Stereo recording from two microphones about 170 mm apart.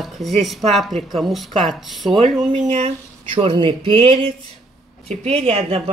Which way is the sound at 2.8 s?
30° right (ahead or behind).